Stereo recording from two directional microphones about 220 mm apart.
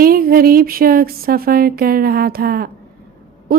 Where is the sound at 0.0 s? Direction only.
40° right (ahead or behind).